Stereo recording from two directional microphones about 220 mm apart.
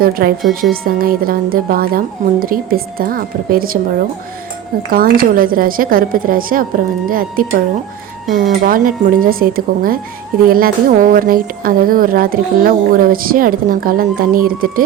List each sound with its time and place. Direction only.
0.0 s speech: 40° right (ahead or behind)
4.9 s speech: 40° right (ahead or behind)
8.6 s speech: 40° right (ahead or behind)